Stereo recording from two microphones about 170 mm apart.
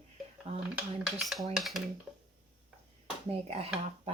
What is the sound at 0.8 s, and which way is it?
Speech, 5° right (ahead or behind).